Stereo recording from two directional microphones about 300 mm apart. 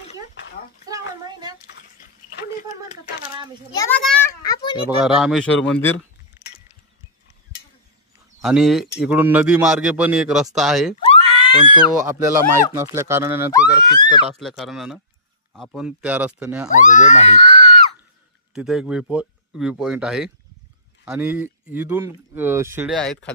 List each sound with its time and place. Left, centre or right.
3.7 s a child's voice: centre
4.8 s a man's voice: centre
8.4 s a man's voice: centre
11.1 s screaming: centre
12.0 s speech: centre
13.5 s a child's voice: centre
14.4 s a man's voice: centre
16.7 s speech: left
18.5 s a man's voice: centre